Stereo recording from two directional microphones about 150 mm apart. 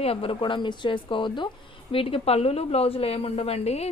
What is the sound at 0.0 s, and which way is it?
A woman's voice, 40° left (ahead or behind).